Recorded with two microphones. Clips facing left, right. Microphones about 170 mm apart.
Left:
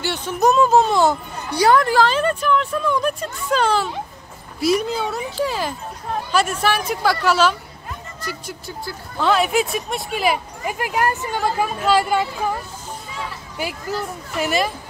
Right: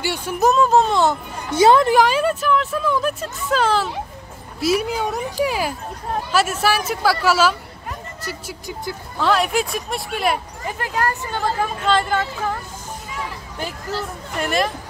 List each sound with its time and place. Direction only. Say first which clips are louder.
0.0 s speech: even; 10° right (ahead or behind)
1.5 s a woman's voice: right 2 dB; 25° right (ahead or behind)
2.0 s speech: even; 5° right (ahead or behind)
10.6 s speech: left 3 dB; 15° left (ahead or behind)
13.6 s speech: left 2 dB; 10° left (ahead or behind)